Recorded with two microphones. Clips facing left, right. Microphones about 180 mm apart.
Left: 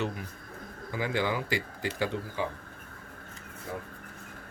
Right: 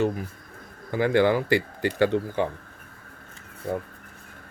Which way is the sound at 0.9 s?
60° right (ahead or behind).